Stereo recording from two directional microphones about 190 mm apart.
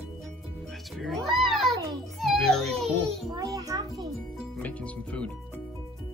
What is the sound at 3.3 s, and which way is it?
Music, 20° right (ahead or behind).